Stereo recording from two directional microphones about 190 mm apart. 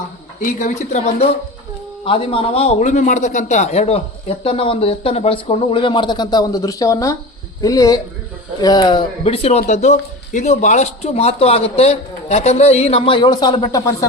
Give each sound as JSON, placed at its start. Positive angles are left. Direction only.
{"t": 0.4, "sound": "a man's voice", "side_deg": 40}